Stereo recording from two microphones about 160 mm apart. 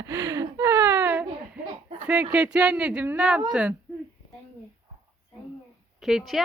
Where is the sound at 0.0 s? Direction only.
20° right (ahead or behind).